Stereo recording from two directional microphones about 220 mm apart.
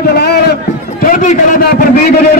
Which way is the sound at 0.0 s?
45° left (ahead or behind).